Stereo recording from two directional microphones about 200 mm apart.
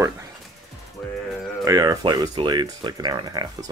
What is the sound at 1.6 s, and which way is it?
Speech, 15° right (ahead or behind).